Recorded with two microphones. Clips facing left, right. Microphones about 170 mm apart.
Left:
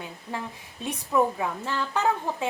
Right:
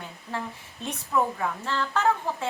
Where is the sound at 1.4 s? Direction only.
15° left (ahead or behind).